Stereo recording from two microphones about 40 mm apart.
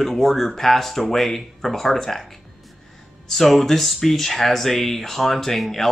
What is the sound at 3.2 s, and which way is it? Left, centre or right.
Speech, centre.